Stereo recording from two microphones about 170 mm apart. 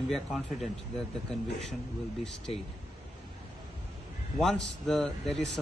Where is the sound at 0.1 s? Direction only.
Centre (ahead or behind).